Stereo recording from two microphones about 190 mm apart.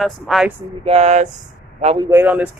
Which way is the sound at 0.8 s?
35° right (ahead or behind).